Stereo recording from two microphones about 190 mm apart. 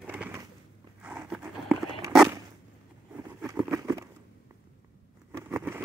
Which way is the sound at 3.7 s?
15° right (ahead or behind).